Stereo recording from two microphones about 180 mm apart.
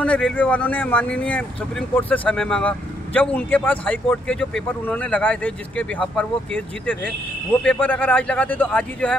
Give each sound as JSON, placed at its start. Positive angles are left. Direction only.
{"t": 0.0, "sound": "speech", "side_deg": 5}